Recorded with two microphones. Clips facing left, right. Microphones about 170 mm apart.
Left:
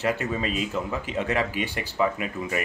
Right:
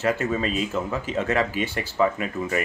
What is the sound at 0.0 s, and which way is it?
Speech, 40° right (ahead or behind).